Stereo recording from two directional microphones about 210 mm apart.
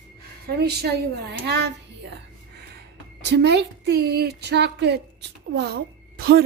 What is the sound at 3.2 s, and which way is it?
A woman's voice, 55° right (ahead or behind).